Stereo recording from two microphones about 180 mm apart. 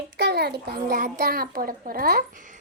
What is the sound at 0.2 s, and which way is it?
A child's voice, 65° right (ahead or behind).